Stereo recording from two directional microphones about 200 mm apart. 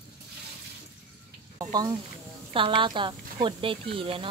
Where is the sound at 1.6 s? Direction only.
20° right (ahead or behind).